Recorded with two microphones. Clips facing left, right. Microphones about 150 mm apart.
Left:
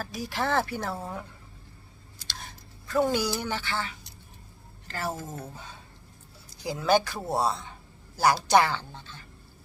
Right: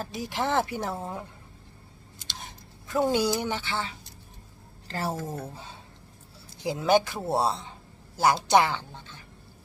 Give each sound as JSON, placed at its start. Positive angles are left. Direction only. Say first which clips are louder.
{"t": 0.0, "sound": "a woman's voice", "louder": "right 1 dB", "side_deg": -20}
{"t": 2.1, "sound": "a sound", "louder": "right 1 dB", "side_deg": -20}
{"t": 4.9, "sound": "a woman's voice", "louder": "right 2 dB", "side_deg": -30}
{"t": 6.6, "sound": "a woman's voice", "louder": "right 1 dB", "side_deg": -25}